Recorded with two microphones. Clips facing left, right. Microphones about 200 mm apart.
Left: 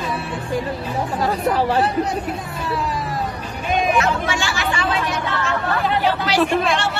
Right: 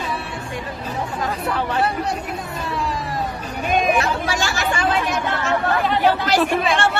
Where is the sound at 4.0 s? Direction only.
40° right (ahead or behind).